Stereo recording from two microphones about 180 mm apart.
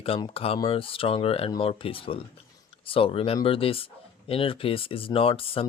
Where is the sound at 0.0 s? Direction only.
30° left (ahead or behind).